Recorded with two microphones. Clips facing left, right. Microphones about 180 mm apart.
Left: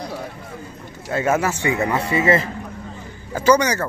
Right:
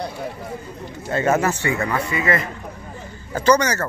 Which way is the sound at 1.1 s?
5° left (ahead or behind).